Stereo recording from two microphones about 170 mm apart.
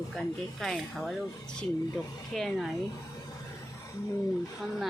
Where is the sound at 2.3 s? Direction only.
Centre (ahead or behind).